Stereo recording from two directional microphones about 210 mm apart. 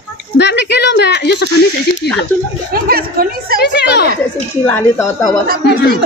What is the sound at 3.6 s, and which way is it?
Speech, 50° left (ahead or behind).